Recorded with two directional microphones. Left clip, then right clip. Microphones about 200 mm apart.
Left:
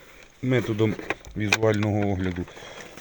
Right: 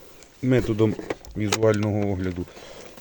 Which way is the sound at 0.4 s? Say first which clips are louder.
Right 2 dB; 15° right (ahead or behind).